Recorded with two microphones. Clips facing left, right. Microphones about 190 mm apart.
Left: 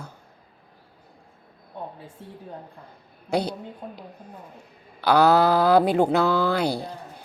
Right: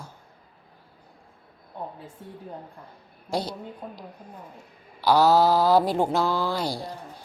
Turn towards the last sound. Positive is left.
turn(degrees=60)  # may be behind; listen again after turning